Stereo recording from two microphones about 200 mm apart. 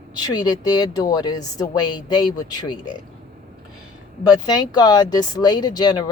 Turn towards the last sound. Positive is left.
turn(degrees=20)  # may be behind; listen again after turning